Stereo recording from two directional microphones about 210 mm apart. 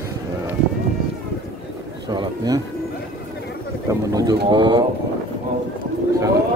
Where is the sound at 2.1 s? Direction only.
15° right (ahead or behind).